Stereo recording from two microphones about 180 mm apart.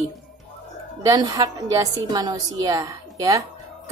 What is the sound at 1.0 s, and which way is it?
A woman's voice, 20° right (ahead or behind).